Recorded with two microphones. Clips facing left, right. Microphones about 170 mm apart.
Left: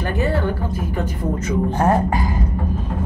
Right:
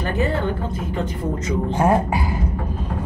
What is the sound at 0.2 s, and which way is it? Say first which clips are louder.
Speech: left 1 dB; 25° right (ahead or behind).